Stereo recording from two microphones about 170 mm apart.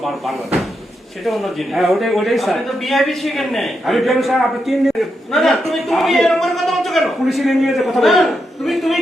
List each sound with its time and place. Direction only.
1.2 s a man's voice: centre (ahead or behind)